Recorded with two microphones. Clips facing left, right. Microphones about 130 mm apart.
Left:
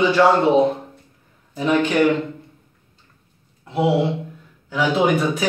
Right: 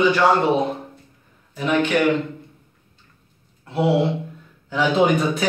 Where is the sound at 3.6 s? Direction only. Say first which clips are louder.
Even; 15° left (ahead or behind).